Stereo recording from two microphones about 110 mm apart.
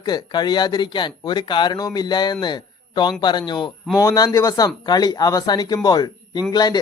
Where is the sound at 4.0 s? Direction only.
30° left (ahead or behind).